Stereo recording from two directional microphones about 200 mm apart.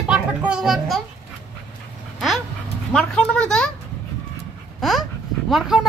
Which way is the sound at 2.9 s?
5° left (ahead or behind).